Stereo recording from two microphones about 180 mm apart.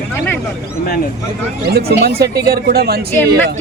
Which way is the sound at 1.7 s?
60° right (ahead or behind).